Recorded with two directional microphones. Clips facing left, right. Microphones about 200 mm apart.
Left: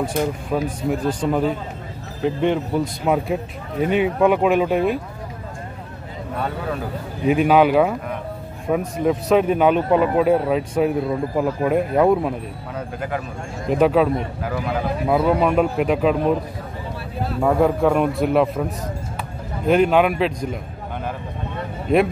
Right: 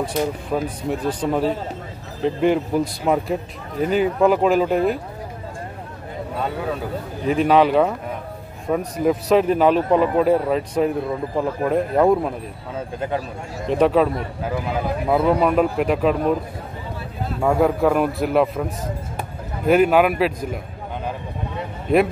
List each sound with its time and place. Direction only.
0.0 s a man's voice: centre (ahead or behind)
7.2 s a man's voice: 5° left (ahead or behind)
12.7 s speech: 25° right (ahead or behind)
13.7 s a man's voice: centre (ahead or behind)
17.4 s a man's voice: centre (ahead or behind)